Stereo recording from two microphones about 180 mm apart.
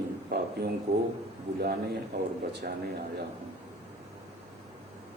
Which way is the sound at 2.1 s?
70° right (ahead or behind).